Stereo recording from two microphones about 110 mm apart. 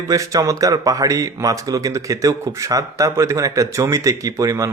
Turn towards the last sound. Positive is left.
turn(degrees=-30)  # may be behind; listen again after turning